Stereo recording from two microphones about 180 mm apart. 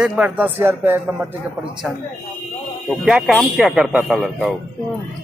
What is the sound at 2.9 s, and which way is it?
A man's voice, centre (ahead or behind).